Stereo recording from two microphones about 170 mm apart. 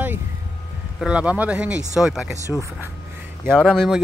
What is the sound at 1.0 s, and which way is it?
Speech, 5° right (ahead or behind).